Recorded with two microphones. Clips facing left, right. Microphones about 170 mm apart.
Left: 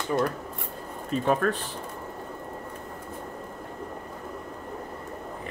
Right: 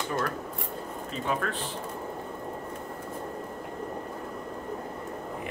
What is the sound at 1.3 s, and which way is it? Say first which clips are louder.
Speech: left 6 dB; 45° left (ahead or behind).